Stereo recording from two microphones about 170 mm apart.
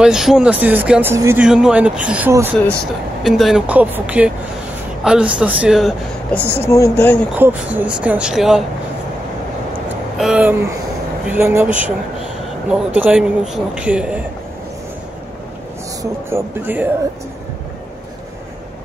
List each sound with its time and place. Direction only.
0.0 s speech: 5° right (ahead or behind)
1.4 s speech: 5° right (ahead or behind)
6.6 s speech: 15° left (ahead or behind)
7.3 s speech: 10° right (ahead or behind)
10.1 s speech: 5° right (ahead or behind)
16.0 s speech: 15° right (ahead or behind)